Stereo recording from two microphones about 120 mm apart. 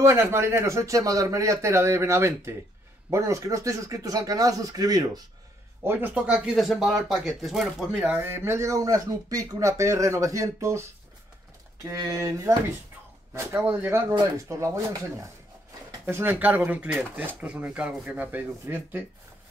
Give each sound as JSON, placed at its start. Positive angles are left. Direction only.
{"t": 0.0, "sound": "speech", "side_deg": -20}
{"t": 5.9, "sound": "speech", "side_deg": -15}
{"t": 8.1, "sound": "speech", "side_deg": -20}
{"t": 11.9, "sound": "speech", "side_deg": -25}